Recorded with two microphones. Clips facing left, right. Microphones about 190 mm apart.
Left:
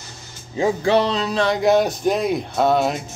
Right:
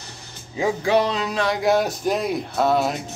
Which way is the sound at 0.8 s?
10° right (ahead or behind).